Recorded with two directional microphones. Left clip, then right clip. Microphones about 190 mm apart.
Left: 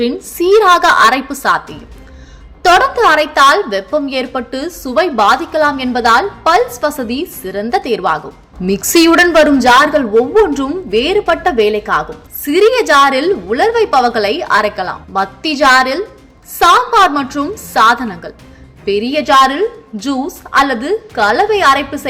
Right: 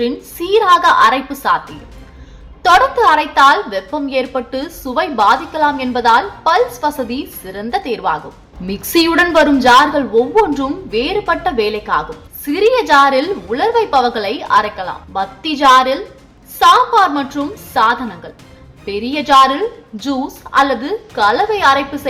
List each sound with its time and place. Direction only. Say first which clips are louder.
0.0 s a woman's voice: left 5 dB; 20° left (ahead or behind)
2.6 s a woman's voice: left 1 dB; 15° left (ahead or behind)